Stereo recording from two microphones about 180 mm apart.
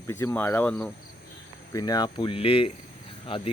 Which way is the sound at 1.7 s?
20° left (ahead or behind).